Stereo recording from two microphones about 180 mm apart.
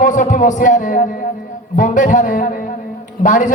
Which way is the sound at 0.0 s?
45° left (ahead or behind).